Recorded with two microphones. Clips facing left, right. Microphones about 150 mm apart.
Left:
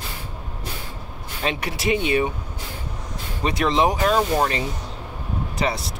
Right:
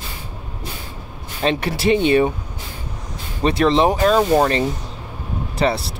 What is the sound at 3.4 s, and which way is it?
Speech, 30° right (ahead or behind).